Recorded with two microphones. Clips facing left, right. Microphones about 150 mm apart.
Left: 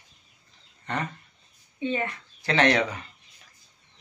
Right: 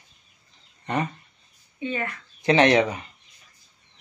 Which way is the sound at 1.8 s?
25° left (ahead or behind).